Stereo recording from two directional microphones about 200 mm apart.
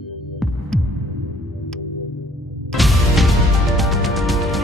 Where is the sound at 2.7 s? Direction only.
Centre (ahead or behind).